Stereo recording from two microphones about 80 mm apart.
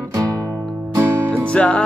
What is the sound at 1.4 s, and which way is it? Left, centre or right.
Music, centre.